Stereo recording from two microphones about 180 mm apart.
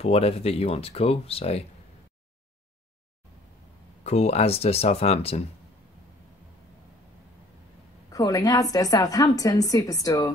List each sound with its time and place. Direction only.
0.0 s speech: 35° left (ahead or behind)
4.0 s speech: 35° left (ahead or behind)
8.1 s a woman's voice: 20° left (ahead or behind)